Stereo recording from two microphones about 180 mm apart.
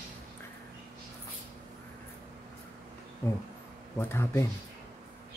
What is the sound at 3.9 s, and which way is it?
Speech, 15° left (ahead or behind).